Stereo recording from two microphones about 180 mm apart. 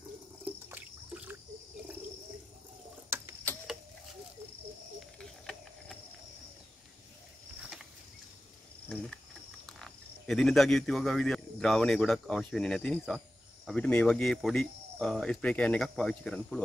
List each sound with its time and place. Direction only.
0.5 s trickle: 10° right (ahead or behind)
5.2 s a sound: 5° left (ahead or behind)
8.8 s cricket: 5° left (ahead or behind)
9.8 s speech: centre (ahead or behind)